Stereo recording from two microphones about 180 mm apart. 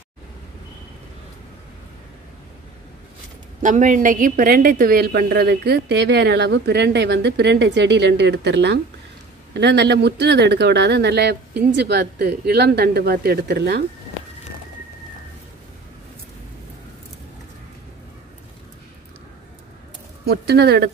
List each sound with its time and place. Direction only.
3.6 s a woman's voice: 45° right (ahead or behind); by 13.8 s 65° right (ahead or behind)
20.2 s speech: 60° right (ahead or behind)